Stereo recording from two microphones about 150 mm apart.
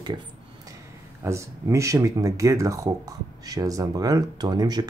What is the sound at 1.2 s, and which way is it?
Speech, 20° right (ahead or behind).